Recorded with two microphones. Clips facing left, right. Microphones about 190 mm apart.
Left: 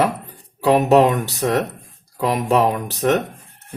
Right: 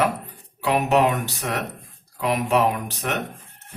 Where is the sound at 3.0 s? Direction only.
35° left (ahead or behind).